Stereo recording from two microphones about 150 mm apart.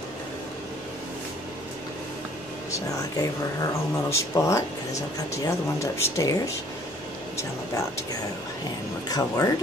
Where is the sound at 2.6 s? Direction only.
20° left (ahead or behind).